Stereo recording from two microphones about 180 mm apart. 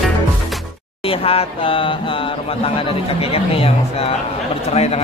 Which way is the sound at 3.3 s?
30° left (ahead or behind).